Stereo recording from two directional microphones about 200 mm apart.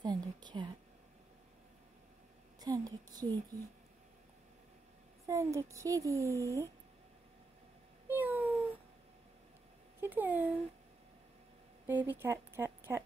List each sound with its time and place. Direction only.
0.0 s whispering: 20° right (ahead or behind)
2.6 s a woman's voice: 20° right (ahead or behind)
5.2 s a woman's voice: 15° right (ahead or behind)
8.1 s a sound: 10° right (ahead or behind)
9.9 s a sound: 10° right (ahead or behind)
11.8 s speech: 10° right (ahead or behind)